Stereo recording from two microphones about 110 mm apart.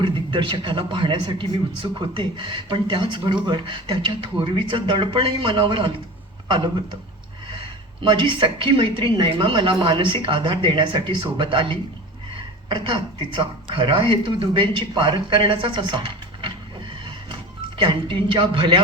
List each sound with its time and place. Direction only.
0.0 s speech: 50° right (ahead or behind)
8.0 s speech: 50° right (ahead or behind)
17.7 s speech: 50° right (ahead or behind)